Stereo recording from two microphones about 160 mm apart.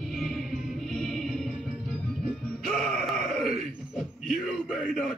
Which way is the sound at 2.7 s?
Centre (ahead or behind).